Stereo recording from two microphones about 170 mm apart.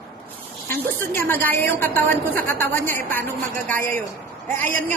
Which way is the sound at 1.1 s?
15° left (ahead or behind).